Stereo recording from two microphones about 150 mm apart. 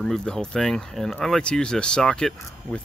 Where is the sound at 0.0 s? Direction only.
5° left (ahead or behind).